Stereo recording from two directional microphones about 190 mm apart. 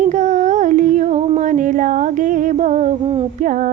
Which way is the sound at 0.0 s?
40° right (ahead or behind).